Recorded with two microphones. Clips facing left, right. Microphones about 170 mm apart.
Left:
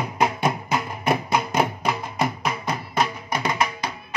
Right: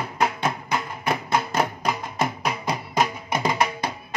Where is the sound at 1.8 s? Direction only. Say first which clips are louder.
Left 1 dB; 5° right (ahead or behind).